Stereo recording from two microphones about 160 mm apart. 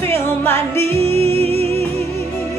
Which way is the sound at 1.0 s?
40° right (ahead or behind).